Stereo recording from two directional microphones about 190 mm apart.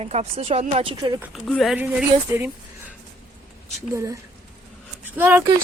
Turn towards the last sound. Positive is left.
turn(degrees=-10)  # may be behind; listen again after turning